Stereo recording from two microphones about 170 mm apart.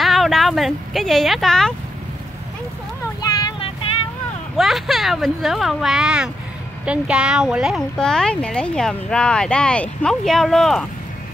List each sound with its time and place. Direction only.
0.0 s speech: centre (ahead or behind)
3.2 s vehicle: 25° left (ahead or behind)
4.6 s speech: centre (ahead or behind)